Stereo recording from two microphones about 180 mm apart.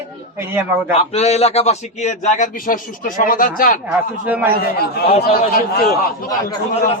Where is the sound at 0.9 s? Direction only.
35° left (ahead or behind); by 3.8 s 50° left (ahead or behind).